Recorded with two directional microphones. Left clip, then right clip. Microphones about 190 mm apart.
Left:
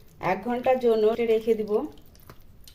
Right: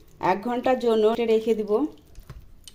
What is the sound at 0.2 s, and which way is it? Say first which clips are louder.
Speech: right 3 dB; 35° right (ahead or behind).